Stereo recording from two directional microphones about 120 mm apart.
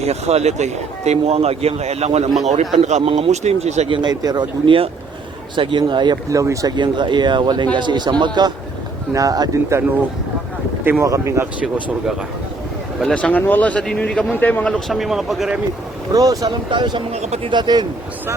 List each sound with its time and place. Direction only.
0.0 s a man's voice: 60° right (ahead or behind)
2.5 s speech: 75° right (ahead or behind)
3.0 s a man's voice: 50° right (ahead or behind); by 3.8 s 70° right (ahead or behind)
3.8 s speech: 45° right (ahead or behind)
4.1 s speech: 35° right (ahead or behind)
11.0 s speech: 25° right (ahead or behind)
13.0 s a man's voice: 5° left (ahead or behind)
16.1 s speech: 30° right (ahead or behind)
17.1 s a man's voice: 65° right (ahead or behind)
17.5 s speech: 40° right (ahead or behind)